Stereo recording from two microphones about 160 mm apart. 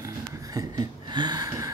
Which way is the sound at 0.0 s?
25° right (ahead or behind).